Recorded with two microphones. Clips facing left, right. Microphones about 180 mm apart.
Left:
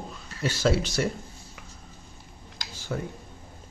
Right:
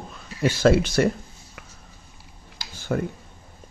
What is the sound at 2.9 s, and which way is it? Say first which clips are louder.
Speech: right 7 dB; 65° right (ahead or behind).